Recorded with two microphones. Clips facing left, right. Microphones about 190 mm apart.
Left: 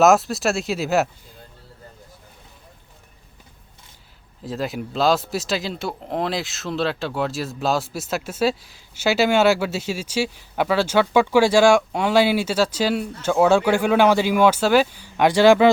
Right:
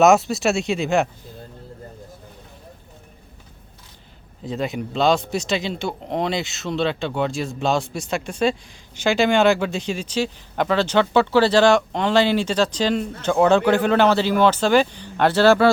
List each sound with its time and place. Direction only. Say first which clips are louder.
0.0 s speech: right 1 dB; centre (ahead or behind)
4.4 s speech: right 1 dB; centre (ahead or behind)